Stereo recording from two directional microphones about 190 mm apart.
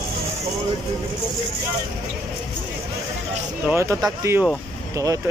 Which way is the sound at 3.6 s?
15° right (ahead or behind).